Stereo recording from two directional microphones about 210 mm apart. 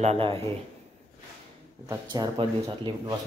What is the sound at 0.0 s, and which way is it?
Speech, 30° right (ahead or behind).